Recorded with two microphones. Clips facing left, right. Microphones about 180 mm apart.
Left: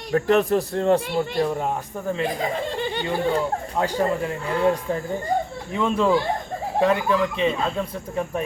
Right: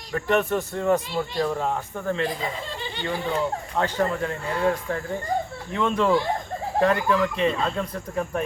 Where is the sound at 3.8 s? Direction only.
15° left (ahead or behind).